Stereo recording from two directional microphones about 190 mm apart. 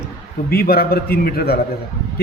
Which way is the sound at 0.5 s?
55° left (ahead or behind).